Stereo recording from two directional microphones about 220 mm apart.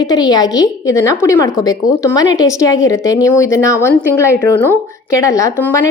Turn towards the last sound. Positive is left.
turn(degrees=15)  # may be behind; listen again after turning